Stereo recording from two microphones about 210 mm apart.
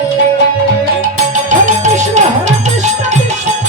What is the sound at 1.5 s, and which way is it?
Music, 35° right (ahead or behind).